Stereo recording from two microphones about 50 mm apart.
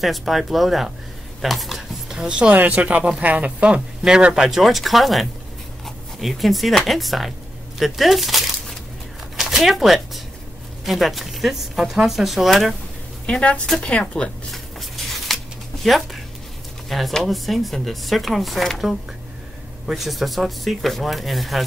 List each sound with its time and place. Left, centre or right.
0.0 s speech: centre
2.2 s speech: centre
2.5 s speech: right
4.0 s speech: centre
13.8 s speech: left
14.5 s a sound: centre
17.2 s speech: centre